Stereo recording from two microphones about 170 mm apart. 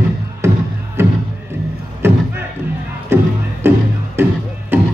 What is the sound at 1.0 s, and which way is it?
Music, 15° right (ahead or behind).